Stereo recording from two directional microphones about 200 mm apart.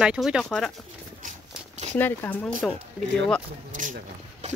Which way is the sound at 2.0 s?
10° left (ahead or behind).